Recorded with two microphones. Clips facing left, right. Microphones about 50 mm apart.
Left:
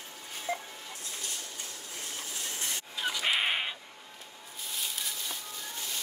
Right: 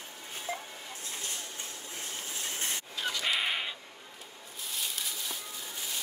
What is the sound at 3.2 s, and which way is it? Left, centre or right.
Cat, left.